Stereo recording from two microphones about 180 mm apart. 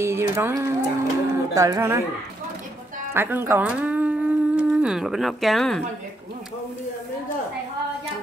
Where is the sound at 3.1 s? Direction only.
10° right (ahead or behind).